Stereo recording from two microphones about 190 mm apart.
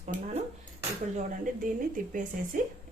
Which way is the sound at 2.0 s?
45° right (ahead or behind).